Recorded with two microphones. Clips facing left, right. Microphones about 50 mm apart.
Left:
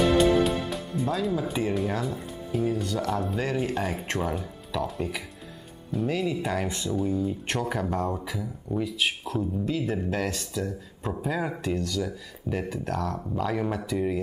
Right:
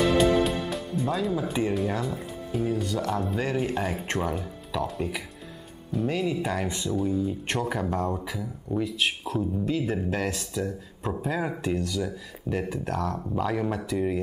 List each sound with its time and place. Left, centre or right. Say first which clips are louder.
0.1 s speech: left 1 dB; centre